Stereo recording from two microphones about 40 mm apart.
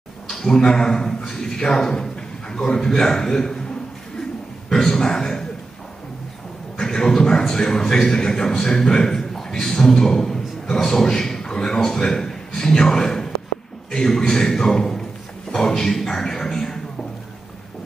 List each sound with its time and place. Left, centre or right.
0.3 s a man's voice: centre
4.6 s speech: centre
6.8 s a man's voice: centre